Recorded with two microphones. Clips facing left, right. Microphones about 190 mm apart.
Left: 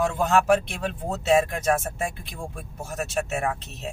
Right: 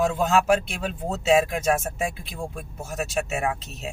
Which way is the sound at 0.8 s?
5° right (ahead or behind).